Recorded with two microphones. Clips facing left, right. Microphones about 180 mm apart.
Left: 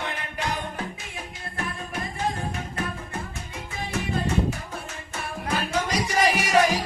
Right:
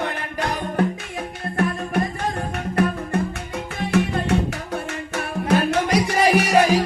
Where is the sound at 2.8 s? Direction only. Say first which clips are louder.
Right 12 dB; 70° right (ahead or behind).